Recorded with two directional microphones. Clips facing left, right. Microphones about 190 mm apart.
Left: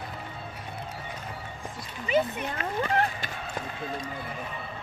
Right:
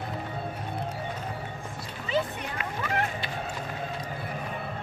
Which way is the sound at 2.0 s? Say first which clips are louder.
Left 3 dB; 20° left (ahead or behind).